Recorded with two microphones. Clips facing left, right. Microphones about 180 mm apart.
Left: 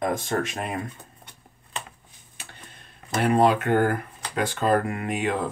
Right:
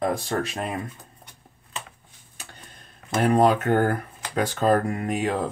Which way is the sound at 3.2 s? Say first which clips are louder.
Right 1 dB; 45° right (ahead or behind).